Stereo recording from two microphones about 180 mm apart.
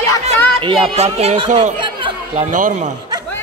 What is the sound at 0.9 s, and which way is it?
Speech, 35° right (ahead or behind).